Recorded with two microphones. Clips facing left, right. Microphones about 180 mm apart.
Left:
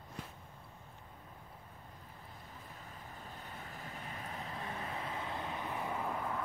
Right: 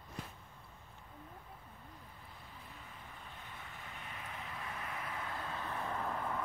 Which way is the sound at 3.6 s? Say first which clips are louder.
Left 3 dB; 40° left (ahead or behind).